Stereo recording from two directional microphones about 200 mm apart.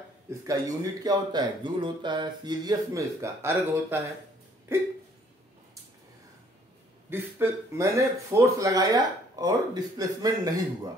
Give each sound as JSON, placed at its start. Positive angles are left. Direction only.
{"t": 0.3, "sound": "speech", "side_deg": -15}
{"t": 7.1, "sound": "speech", "side_deg": -10}